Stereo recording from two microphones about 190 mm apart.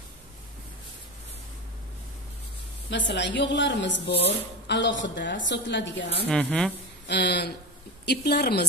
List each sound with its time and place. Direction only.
2.9 s speech: 65° left (ahead or behind)
6.2 s speech: 5° left (ahead or behind)
7.1 s a woman's voice: 60° left (ahead or behind)